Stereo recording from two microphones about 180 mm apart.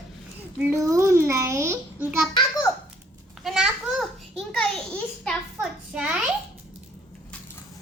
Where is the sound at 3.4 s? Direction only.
Centre (ahead or behind).